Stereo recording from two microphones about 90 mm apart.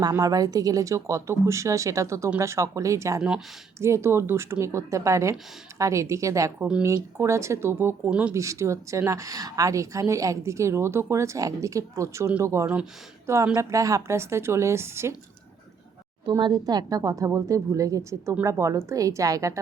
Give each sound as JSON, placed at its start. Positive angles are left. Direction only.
{"t": 0.2, "sound": "speech", "side_deg": -45}
{"t": 3.2, "sound": "speech", "side_deg": -10}
{"t": 3.8, "sound": "speech", "side_deg": -30}
{"t": 12.6, "sound": "speech", "side_deg": -15}
{"t": 13.2, "sound": "speech", "side_deg": -30}
{"t": 16.4, "sound": "speech", "side_deg": -50}